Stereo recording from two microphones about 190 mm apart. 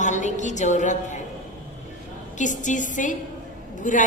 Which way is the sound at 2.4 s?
40° left (ahead or behind).